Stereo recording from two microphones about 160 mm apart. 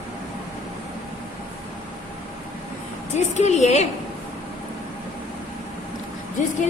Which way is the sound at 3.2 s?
45° left (ahead or behind).